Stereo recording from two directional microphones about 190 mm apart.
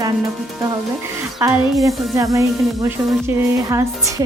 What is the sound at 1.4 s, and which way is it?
Speech, 10° right (ahead or behind).